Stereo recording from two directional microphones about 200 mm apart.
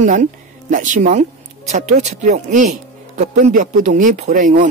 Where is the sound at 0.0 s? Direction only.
40° right (ahead or behind).